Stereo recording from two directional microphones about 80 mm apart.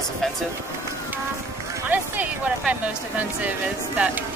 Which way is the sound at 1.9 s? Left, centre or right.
Centre.